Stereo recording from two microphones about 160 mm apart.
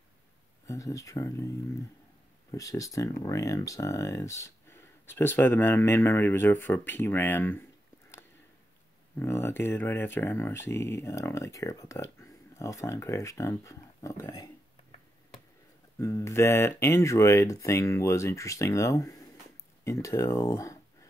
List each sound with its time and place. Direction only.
0.7 s speech: 20° left (ahead or behind)
2.5 s speech: 20° left (ahead or behind)
9.2 s speech: 15° left (ahead or behind)
14.3 s a sound: 35° left (ahead or behind)
16.0 s speech: 20° left (ahead or behind)